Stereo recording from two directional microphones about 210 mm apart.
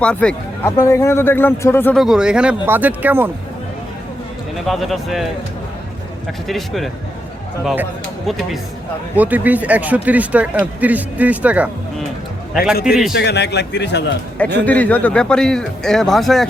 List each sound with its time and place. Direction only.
0.0 s speech: 5° left (ahead or behind)
2.0 s speech: 5° right (ahead or behind)
4.6 s speech: centre (ahead or behind)
6.5 s speech: centre (ahead or behind)
9.1 s speech: 10° right (ahead or behind)
12.8 s speech: 5° right (ahead or behind)
13.1 s a man's voice: 55° left (ahead or behind)
14.3 s speech: 5° left (ahead or behind)